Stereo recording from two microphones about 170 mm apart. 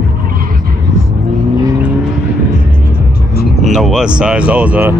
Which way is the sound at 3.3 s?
65° left (ahead or behind).